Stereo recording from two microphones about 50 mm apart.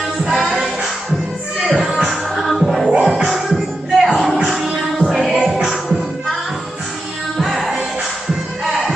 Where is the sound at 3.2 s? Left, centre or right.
Centre.